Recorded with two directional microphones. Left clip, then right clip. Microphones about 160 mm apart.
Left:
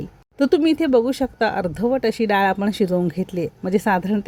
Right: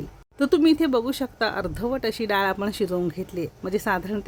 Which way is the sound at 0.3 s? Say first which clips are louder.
Left 2 dB; 15° left (ahead or behind).